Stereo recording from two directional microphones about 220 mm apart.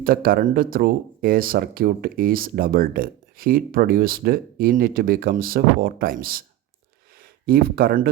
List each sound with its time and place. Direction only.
0.0 s speech: 40° right (ahead or behind)
7.4 s speech: 45° right (ahead or behind)